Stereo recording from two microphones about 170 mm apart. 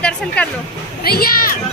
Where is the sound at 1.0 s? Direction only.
65° left (ahead or behind).